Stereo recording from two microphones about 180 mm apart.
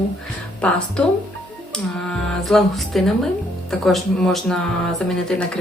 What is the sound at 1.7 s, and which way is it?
Speech, 5° left (ahead or behind).